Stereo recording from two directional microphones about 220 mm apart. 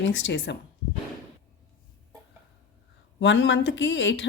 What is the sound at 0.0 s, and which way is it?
Speech, 55° left (ahead or behind).